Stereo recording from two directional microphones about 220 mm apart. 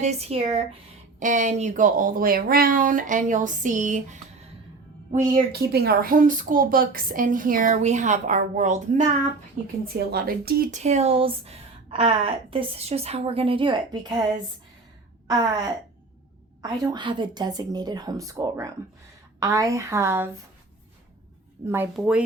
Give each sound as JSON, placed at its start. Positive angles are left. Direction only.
{"t": 0.0, "sound": "speech", "side_deg": -30}
{"t": 5.3, "sound": "speech", "side_deg": -45}
{"t": 9.8, "sound": "speech", "side_deg": -45}
{"t": 16.6, "sound": "a woman's voice", "side_deg": -15}
{"t": 21.6, "sound": "speech", "side_deg": -30}
{"t": 21.9, "sound": "speech", "side_deg": -5}